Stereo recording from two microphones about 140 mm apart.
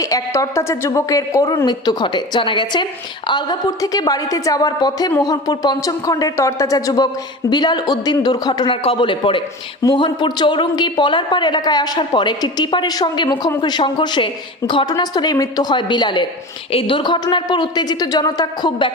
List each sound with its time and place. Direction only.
0.0 s a woman's voice: 25° left (ahead or behind)